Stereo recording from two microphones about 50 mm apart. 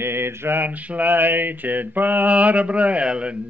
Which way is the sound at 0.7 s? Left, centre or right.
Right.